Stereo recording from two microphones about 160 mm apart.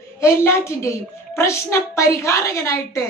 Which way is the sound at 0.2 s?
15° left (ahead or behind).